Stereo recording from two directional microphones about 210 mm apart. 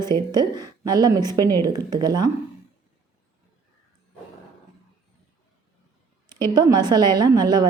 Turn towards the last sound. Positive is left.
turn(degrees=-20)  # may be behind; listen again after turning